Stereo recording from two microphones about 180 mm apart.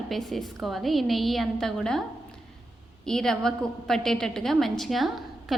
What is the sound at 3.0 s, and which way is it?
Bell, 5° left (ahead or behind).